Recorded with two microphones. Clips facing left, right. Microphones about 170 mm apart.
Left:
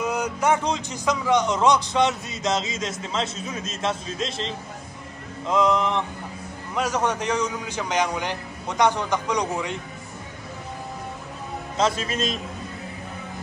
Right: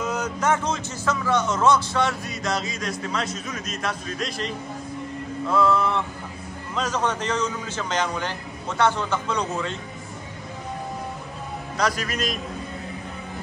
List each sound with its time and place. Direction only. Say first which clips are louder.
0.0 s a man's voice: left 1 dB; 10° left (ahead or behind)
11.7 s a man's voice: left 2 dB; 25° left (ahead or behind)